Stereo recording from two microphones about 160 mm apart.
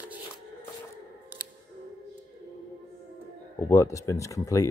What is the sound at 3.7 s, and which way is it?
Speech, 20° left (ahead or behind).